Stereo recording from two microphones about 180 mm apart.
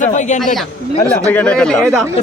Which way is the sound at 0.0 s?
45° left (ahead or behind).